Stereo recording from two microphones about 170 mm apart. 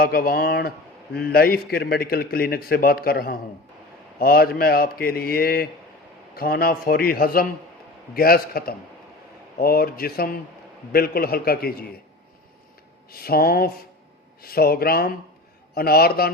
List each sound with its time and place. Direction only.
0.0 s a man's voice: 60° left (ahead or behind)
13.1 s a man's voice: 65° left (ahead or behind)